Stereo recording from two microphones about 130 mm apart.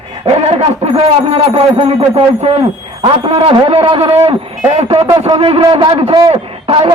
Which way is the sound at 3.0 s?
35° right (ahead or behind).